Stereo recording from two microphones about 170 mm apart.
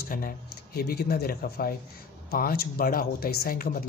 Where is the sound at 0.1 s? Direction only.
55° left (ahead or behind).